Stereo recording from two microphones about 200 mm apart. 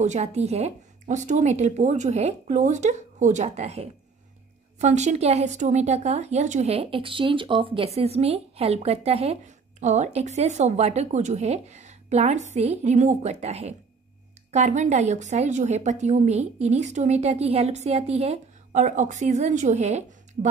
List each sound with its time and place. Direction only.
0.0 s a woman's voice: 35° right (ahead or behind)